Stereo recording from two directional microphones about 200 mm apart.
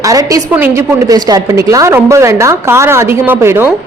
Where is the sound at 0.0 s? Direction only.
15° right (ahead or behind).